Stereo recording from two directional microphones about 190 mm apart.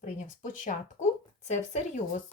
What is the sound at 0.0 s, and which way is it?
Speech, 45° left (ahead or behind).